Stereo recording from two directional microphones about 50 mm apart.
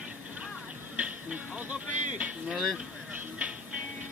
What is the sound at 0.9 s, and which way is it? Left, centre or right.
Speech, right.